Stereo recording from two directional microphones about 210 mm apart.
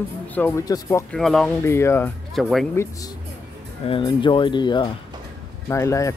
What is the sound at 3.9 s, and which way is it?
Speech, 20° left (ahead or behind).